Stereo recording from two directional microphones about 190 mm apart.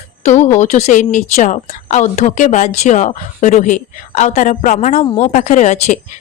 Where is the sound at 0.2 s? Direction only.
40° left (ahead or behind).